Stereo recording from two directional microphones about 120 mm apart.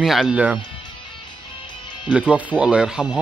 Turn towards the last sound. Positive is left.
turn(degrees=-5)  # may be behind; listen again after turning